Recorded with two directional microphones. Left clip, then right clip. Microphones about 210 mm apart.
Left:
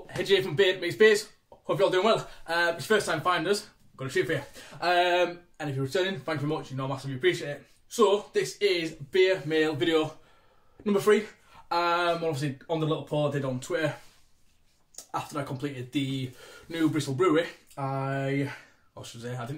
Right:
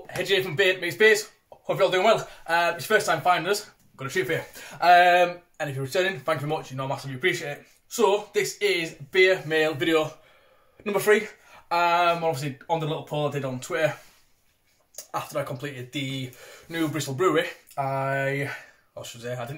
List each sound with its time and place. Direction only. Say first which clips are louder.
0.0 s speech: right 1 dB; 10° left (ahead or behind)
11.7 s speech: right 4 dB; 15° left (ahead or behind)
15.0 s speech: right 4 dB; 15° left (ahead or behind)
17.9 s a sound: right 5 dB; 30° right (ahead or behind)
18.9 s speech: right 5 dB; 15° left (ahead or behind)